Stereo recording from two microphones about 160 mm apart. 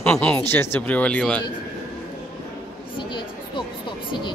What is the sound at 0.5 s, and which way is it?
Speech, 15° left (ahead or behind).